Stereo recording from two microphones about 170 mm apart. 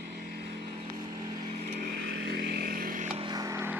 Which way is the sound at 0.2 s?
65° right (ahead or behind).